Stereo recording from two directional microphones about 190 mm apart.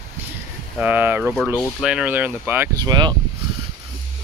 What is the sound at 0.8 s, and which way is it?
Speech, 10° right (ahead or behind).